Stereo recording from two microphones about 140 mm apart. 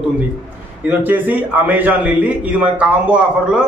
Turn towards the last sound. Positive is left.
turn(degrees=-10)  # may be behind; listen again after turning